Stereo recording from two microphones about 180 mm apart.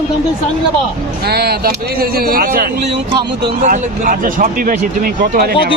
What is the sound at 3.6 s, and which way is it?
Speech, 45° right (ahead or behind).